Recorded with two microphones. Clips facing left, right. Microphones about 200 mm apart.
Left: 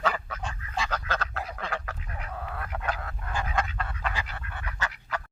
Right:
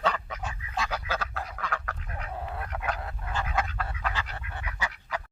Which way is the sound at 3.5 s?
Centre (ahead or behind).